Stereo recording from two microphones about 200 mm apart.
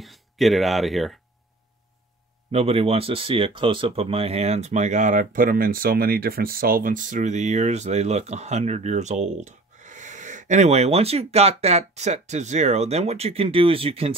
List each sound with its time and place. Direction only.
0.0 s speech: centre (ahead or behind)
2.5 s speech: 30° right (ahead or behind)